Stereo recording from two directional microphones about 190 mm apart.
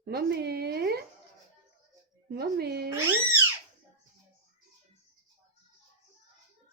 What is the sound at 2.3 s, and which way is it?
Speech, 55° right (ahead or behind).